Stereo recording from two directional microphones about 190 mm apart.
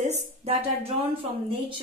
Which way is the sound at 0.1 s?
35° right (ahead or behind).